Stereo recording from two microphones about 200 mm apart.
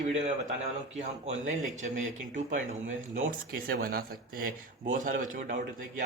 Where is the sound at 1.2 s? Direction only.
35° right (ahead or behind).